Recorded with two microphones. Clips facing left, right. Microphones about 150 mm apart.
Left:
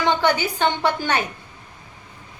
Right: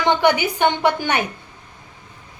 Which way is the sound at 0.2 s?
15° right (ahead or behind).